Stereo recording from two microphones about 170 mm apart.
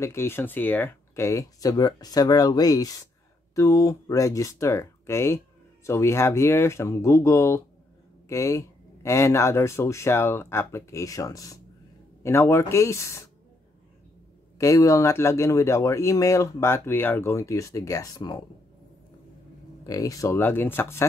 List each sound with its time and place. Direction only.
0.0 s speech: 15° left (ahead or behind)
14.6 s speech: 20° left (ahead or behind)
19.8 s speech: 20° left (ahead or behind)